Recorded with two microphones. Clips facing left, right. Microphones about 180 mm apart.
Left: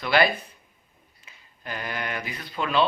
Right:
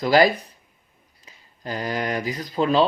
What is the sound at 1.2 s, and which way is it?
Speech, 35° right (ahead or behind).